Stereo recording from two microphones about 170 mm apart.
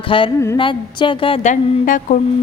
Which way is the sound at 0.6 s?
30° left (ahead or behind).